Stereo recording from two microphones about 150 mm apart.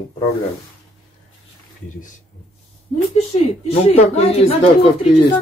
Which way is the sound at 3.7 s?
45° left (ahead or behind).